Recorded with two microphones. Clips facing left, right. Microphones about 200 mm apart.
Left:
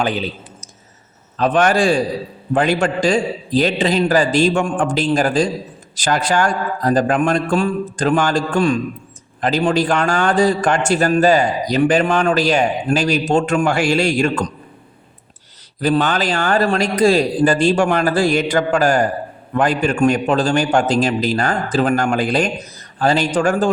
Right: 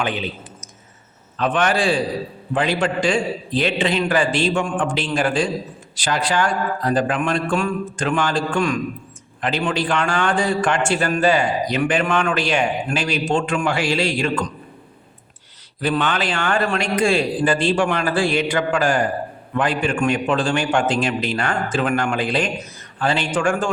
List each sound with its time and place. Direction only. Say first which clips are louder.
0.0 s a man's voice: left 4 dB; 35° left (ahead or behind)
1.4 s a man's voice: left 5 dB; 40° left (ahead or behind)
15.8 s a man's voice: left 4 dB; 40° left (ahead or behind)